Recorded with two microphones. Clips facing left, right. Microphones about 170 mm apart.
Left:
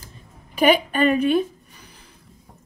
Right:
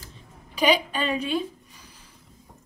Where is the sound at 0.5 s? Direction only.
55° left (ahead or behind).